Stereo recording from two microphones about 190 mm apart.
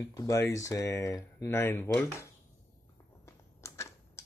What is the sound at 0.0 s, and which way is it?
Speech, 15° left (ahead or behind).